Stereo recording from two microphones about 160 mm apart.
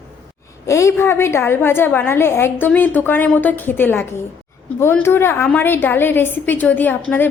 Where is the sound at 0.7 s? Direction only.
20° left (ahead or behind).